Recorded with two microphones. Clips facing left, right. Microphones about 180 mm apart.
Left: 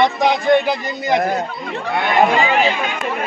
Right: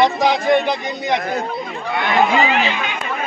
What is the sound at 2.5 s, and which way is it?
Speech, 40° left (ahead or behind).